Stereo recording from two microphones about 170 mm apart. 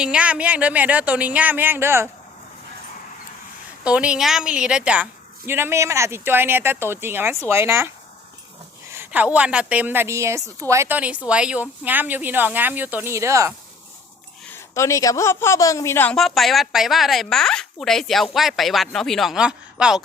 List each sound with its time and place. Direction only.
0.0 s speech: 5° right (ahead or behind)
3.8 s a woman's voice: 5° right (ahead or behind)
14.5 s a woman's voice: 15° left (ahead or behind)
16.1 s a woman's voice: centre (ahead or behind)